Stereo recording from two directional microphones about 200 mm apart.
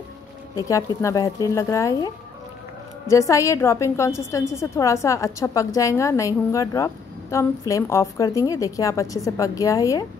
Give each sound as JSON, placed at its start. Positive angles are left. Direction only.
{"t": 0.6, "sound": "a woman's voice", "side_deg": 15}